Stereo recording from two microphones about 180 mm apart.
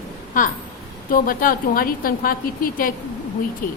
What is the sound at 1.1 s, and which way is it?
Speech, 50° left (ahead or behind).